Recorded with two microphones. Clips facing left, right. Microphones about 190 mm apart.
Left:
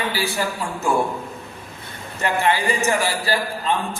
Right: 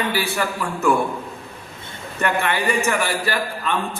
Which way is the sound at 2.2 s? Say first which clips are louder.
Left 1 dB; 60° right (ahead or behind).